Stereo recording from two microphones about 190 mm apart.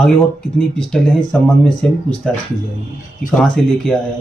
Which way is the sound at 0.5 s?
5° left (ahead or behind).